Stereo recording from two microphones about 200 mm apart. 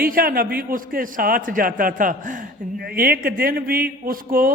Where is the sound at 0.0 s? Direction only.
45° right (ahead or behind).